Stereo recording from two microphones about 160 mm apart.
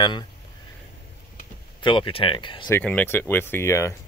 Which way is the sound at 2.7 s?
10° left (ahead or behind).